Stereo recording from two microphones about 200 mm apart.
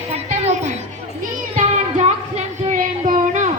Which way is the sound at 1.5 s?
35° right (ahead or behind).